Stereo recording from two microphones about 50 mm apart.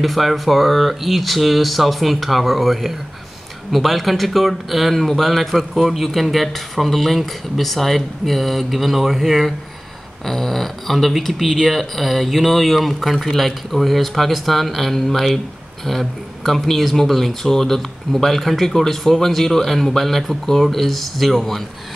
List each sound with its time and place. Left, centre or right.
0.0 s speech: centre